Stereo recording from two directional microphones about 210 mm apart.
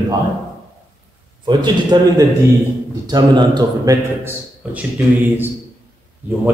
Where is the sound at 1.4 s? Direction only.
20° right (ahead or behind).